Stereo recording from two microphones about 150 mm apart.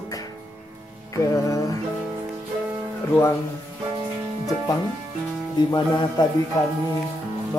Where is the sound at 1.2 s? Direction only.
20° left (ahead or behind).